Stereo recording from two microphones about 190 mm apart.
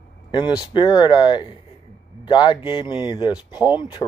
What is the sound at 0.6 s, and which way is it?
Speech, 20° left (ahead or behind).